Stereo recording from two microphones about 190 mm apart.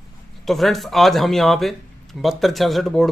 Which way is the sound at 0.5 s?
Centre (ahead or behind).